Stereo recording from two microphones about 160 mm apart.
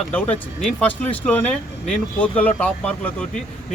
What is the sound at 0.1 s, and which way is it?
Speech, 10° left (ahead or behind).